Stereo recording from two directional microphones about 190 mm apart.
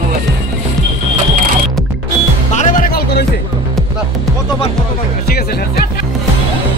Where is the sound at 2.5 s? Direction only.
45° left (ahead or behind).